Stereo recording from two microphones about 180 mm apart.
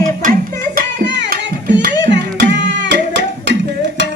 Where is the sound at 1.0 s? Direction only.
75° right (ahead or behind).